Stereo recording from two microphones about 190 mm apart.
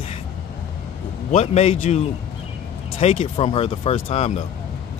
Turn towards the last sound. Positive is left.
turn(degrees=35)  # may be behind; listen again after turning